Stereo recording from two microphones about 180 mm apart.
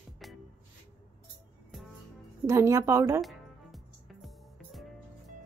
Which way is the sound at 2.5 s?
15° right (ahead or behind).